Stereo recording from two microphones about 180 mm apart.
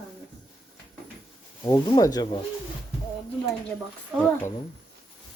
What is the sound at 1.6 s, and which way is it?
Speech, 20° left (ahead or behind).